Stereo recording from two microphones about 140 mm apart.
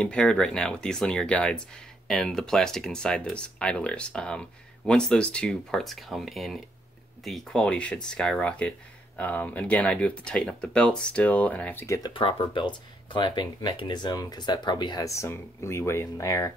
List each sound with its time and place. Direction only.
0.0 s speech: 5° left (ahead or behind)
12.1 s speech: 40° left (ahead or behind); by 16.5 s 20° left (ahead or behind)